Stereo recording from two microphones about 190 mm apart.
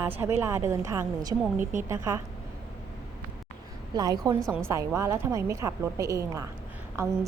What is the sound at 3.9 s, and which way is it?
A woman's voice, 20° right (ahead or behind).